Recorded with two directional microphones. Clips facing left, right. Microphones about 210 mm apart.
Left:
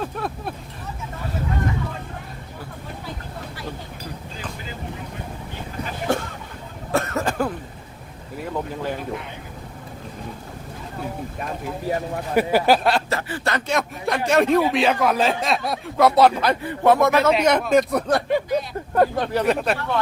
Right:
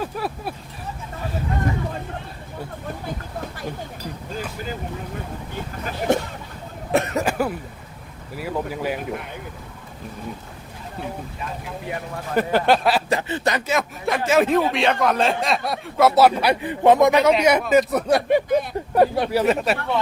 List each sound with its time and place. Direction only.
0.0 s vehicle: 5° right (ahead or behind)
6.1 s a sound: 20° right (ahead or behind)
6.9 s cough: 15° right (ahead or behind)
8.4 s speech: 10° right (ahead or behind)
12.3 s speech: 10° left (ahead or behind)
13.1 s speech: 20° right (ahead or behind)
13.7 s speech: centre (ahead or behind)